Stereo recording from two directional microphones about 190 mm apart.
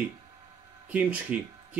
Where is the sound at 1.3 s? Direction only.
5° right (ahead or behind).